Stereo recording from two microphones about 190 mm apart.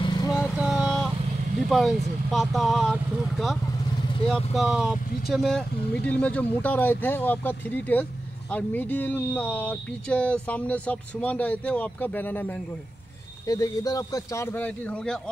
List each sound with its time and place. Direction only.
0.0 s vehicle: 25° left (ahead or behind)
0.6 s vehicle: 5° right (ahead or behind)
1.7 s speech: centre (ahead or behind)